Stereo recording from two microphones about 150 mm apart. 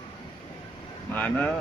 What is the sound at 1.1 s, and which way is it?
Speech, 10° left (ahead or behind).